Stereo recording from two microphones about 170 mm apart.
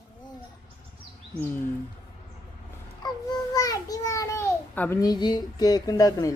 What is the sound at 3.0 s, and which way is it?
Babbling, 25° left (ahead or behind).